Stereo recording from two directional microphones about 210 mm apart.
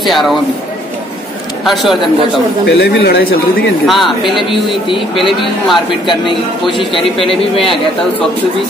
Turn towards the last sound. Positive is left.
turn(degrees=25)  # may be behind; listen again after turning